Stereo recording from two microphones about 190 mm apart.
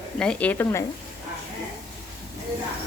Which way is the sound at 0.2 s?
5° left (ahead or behind).